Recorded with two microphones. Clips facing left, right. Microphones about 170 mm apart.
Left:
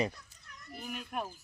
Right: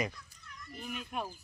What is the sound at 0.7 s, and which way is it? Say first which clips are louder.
Speech: even; 5° left (ahead or behind).